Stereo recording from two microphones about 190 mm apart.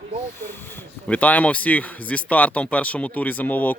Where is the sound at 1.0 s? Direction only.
10° left (ahead or behind).